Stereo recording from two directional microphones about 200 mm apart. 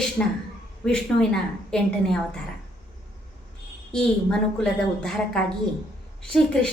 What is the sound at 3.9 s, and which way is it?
Speech, 5° left (ahead or behind).